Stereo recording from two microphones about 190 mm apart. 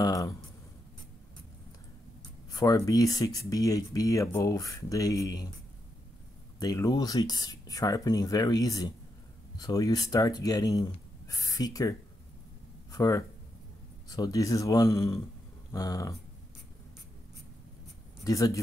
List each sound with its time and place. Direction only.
0.0 s a sound: 20° left (ahead or behind)
2.5 s speech: 20° left (ahead or behind)
6.6 s speech: 20° left (ahead or behind)
12.9 s speech: 20° left (ahead or behind)
18.2 s speech: 15° left (ahead or behind)